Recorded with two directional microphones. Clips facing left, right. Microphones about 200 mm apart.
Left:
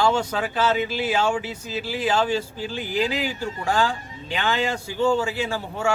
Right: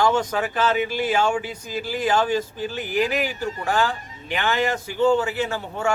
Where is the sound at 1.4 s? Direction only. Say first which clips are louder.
Even; 5° left (ahead or behind).